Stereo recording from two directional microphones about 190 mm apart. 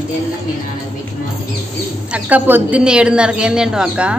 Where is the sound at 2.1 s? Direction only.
10° right (ahead or behind).